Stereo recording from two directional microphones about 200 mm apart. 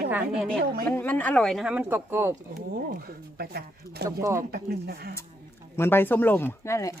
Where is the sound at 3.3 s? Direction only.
50° right (ahead or behind).